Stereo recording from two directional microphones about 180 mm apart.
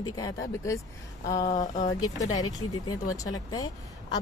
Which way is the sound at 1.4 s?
45° left (ahead or behind).